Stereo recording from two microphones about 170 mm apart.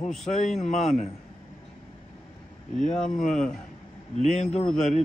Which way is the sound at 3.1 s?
45° left (ahead or behind).